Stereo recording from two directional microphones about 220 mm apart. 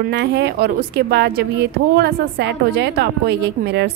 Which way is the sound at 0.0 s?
50° right (ahead or behind).